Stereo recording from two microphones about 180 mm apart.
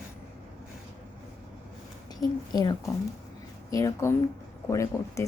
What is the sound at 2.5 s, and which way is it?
A woman's voice, 20° left (ahead or behind).